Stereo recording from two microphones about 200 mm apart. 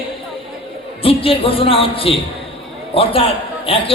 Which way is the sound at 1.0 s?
25° left (ahead or behind).